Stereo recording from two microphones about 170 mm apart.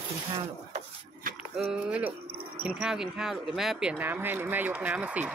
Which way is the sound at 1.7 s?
10° right (ahead or behind).